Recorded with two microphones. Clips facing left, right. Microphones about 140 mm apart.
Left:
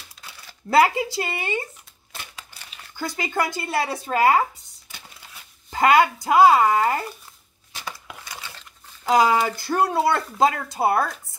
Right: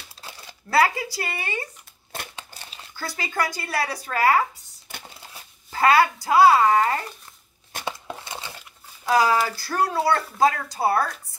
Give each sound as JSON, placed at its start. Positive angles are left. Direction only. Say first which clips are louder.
{"t": 0.2, "sound": "crumpling", "louder": "right 4 dB", "side_deg": -30}
{"t": 0.7, "sound": "speech", "louder": "left 3 dB", "side_deg": 20}
{"t": 2.3, "sound": "crushing", "louder": "right 3 dB", "side_deg": -30}
{"t": 3.0, "sound": "speech", "louder": "left 2 dB", "side_deg": 20}
{"t": 7.8, "sound": "crumpling", "louder": "right 4 dB", "side_deg": -25}
{"t": 9.0, "sound": "speech", "louder": "left 2 dB", "side_deg": 20}